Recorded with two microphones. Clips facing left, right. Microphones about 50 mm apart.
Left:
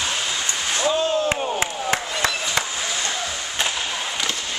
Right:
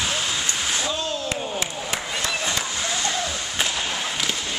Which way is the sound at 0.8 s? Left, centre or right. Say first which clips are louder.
Left 6 dB; centre.